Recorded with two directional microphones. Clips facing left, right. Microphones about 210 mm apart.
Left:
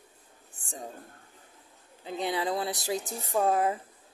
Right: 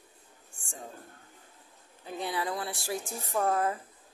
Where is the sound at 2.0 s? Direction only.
20° left (ahead or behind).